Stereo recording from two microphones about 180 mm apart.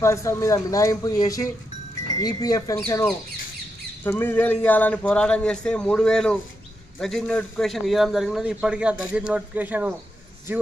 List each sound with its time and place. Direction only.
0.0 s a man's voice: 15° left (ahead or behind); by 9.9 s 10° right (ahead or behind)